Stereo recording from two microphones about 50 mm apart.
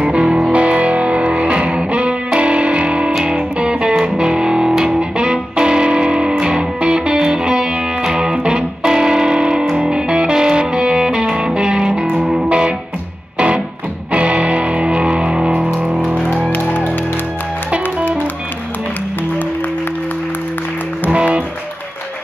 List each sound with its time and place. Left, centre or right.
0.0 s music: centre
14.1 s music: right
16.5 s music: left
21.1 s music: right